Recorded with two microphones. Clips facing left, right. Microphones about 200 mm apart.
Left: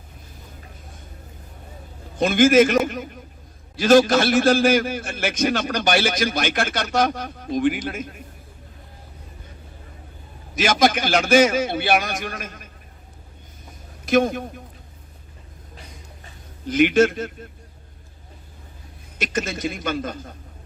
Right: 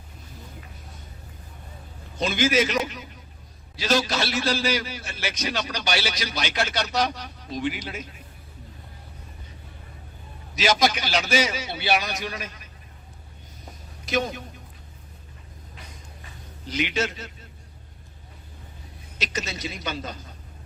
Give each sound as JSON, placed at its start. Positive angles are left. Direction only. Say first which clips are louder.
{"t": 2.1, "sound": "a man's voice", "louder": "left 8 dB", "side_deg": 50}
{"t": 10.5, "sound": "a man's voice", "louder": "left 4 dB", "side_deg": 50}
{"t": 14.0, "sound": "a man's voice", "louder": "left 8 dB", "side_deg": 50}
{"t": 16.6, "sound": "a man's voice", "louder": "left 11 dB", "side_deg": 50}
{"t": 19.2, "sound": "a man's voice", "louder": "left 6 dB", "side_deg": 50}